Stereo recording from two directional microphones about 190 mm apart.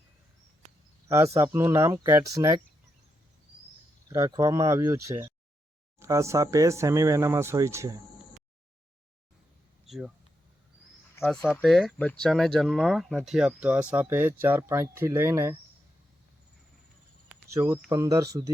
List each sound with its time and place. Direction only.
1.0 s speech: 15° right (ahead or behind)
4.1 s speech: 15° right (ahead or behind)
9.8 s a sound: centre (ahead or behind)
11.4 s speech: centre (ahead or behind)
17.2 s speech: 15° right (ahead or behind)